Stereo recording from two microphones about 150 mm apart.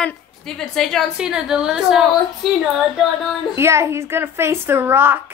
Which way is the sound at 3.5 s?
20° right (ahead or behind).